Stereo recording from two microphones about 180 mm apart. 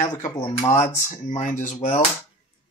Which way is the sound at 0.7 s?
40° left (ahead or behind).